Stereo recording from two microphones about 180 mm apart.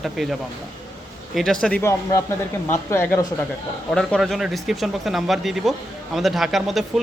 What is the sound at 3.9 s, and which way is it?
Speech, centre (ahead or behind).